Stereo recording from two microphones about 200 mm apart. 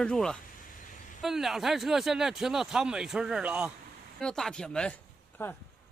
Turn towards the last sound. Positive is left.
turn(degrees=10)  # may be behind; listen again after turning